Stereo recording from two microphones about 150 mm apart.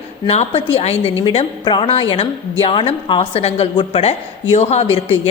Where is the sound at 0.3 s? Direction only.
40° left (ahead or behind).